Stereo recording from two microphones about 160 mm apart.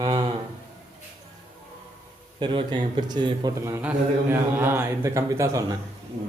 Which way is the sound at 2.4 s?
30° right (ahead or behind).